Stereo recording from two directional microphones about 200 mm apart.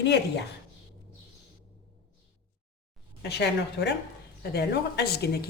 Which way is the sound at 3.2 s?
55° left (ahead or behind).